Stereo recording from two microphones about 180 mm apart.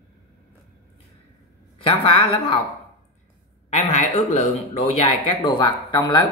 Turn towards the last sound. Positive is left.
turn(degrees=25)  # may be behind; listen again after turning